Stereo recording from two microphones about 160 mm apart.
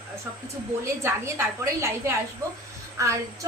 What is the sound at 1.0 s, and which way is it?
A woman's voice, 15° right (ahead or behind).